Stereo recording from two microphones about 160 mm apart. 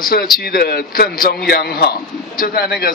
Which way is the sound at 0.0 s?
65° left (ahead or behind).